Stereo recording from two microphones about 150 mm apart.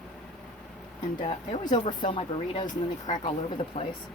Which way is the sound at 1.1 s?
35° left (ahead or behind).